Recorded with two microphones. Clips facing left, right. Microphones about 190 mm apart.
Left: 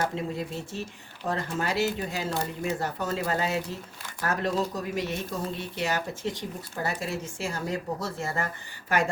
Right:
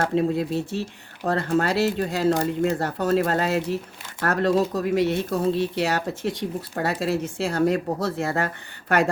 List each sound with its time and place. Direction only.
0.1 s speech: 65° right (ahead or behind)